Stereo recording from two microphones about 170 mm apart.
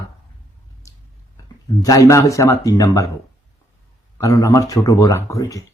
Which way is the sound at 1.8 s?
20° left (ahead or behind).